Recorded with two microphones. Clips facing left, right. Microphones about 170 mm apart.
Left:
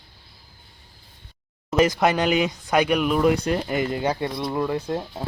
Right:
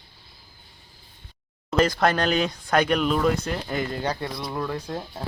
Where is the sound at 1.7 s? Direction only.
15° left (ahead or behind).